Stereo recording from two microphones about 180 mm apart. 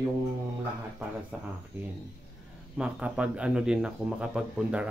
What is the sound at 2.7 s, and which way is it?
Speech, 5° right (ahead or behind).